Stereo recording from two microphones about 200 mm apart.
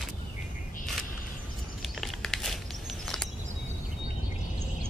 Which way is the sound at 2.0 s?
Centre (ahead or behind).